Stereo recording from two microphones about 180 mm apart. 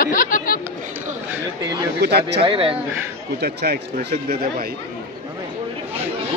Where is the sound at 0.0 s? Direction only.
50° left (ahead or behind).